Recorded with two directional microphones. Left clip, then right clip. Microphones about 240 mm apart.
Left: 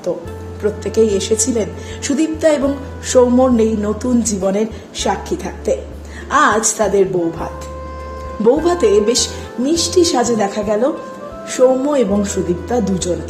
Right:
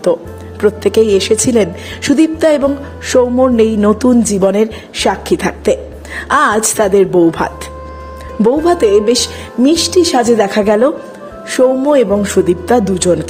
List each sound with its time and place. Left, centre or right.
0.6 s speech: right